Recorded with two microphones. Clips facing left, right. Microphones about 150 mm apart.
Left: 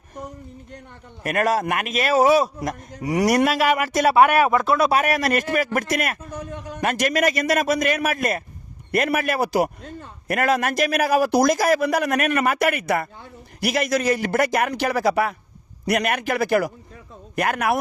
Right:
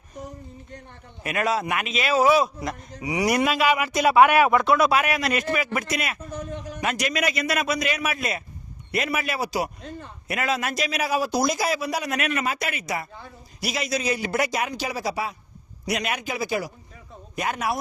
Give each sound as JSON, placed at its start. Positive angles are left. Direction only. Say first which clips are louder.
{"t": 1.2, "sound": "a man's voice", "louder": "left 4 dB", "side_deg": 45}